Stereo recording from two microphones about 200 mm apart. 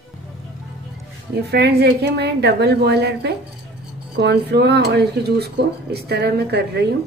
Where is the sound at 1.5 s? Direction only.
55° right (ahead or behind).